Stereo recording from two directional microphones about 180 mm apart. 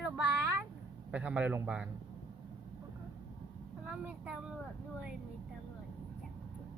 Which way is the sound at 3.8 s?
5° right (ahead or behind).